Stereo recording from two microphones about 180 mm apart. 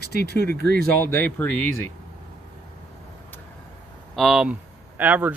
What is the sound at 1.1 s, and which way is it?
Speech, 10° left (ahead or behind).